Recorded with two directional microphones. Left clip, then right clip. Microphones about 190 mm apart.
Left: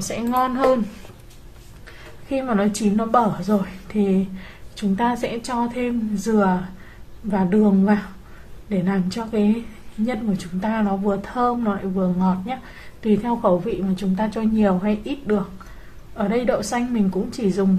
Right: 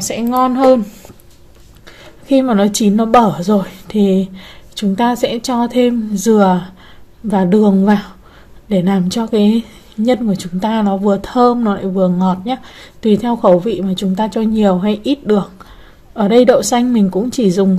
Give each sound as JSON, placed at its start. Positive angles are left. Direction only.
{"t": 0.1, "sound": "speech", "side_deg": -30}
{"t": 1.9, "sound": "speech", "side_deg": -35}